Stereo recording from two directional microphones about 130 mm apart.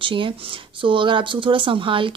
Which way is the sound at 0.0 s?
40° right (ahead or behind).